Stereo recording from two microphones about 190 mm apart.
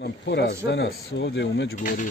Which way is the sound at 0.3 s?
65° left (ahead or behind).